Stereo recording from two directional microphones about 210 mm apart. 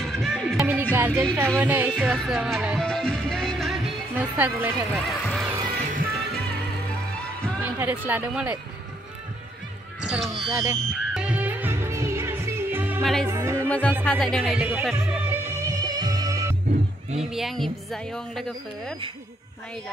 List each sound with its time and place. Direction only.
0.0 s music: centre (ahead or behind)
0.9 s speech: 10° right (ahead or behind)
1.6 s music: 10° right (ahead or behind)
5.5 s music: 20° right (ahead or behind)
5.9 s music: 45° right (ahead or behind)
7.6 s speech: 10° right (ahead or behind)
10.0 s a sound: centre (ahead or behind)
10.5 s music: 15° right (ahead or behind)
13.0 s speech: centre (ahead or behind)
13.3 s speech: 10° right (ahead or behind)
13.7 s speech: 5° left (ahead or behind)
14.1 s music: centre (ahead or behind); by 16.5 s 15° right (ahead or behind)
17.2 s speech: centre (ahead or behind)